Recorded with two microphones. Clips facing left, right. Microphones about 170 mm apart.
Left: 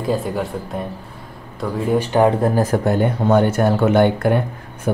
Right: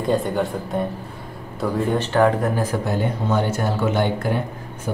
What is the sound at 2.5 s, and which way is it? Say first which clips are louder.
Speech: left 5 dB; 45° left (ahead or behind).